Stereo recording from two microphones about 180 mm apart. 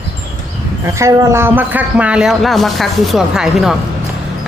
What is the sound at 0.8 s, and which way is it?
Speech, 15° right (ahead or behind).